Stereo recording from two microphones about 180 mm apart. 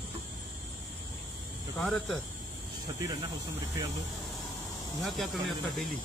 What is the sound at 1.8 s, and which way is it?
Speech, centre (ahead or behind).